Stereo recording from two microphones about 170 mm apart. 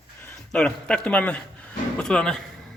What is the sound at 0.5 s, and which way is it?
Speech, 5° left (ahead or behind).